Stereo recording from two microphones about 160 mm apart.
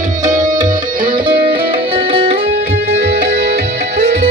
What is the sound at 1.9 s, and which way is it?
Music, 35° right (ahead or behind).